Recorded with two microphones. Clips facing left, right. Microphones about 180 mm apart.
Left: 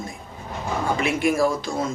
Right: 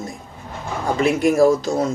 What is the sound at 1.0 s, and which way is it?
Speech, 40° right (ahead or behind).